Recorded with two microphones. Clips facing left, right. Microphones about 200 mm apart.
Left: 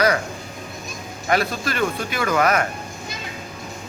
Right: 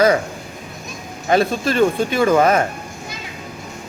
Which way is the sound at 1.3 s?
25° right (ahead or behind).